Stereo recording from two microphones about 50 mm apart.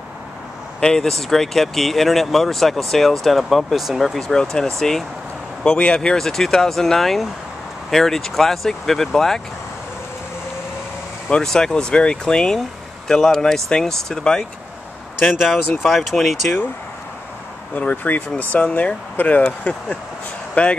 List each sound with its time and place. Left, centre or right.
0.7 s speech: centre
4.0 s speech: centre
11.2 s speech: centre
15.2 s speech: centre
17.7 s speech: left
20.6 s speech: left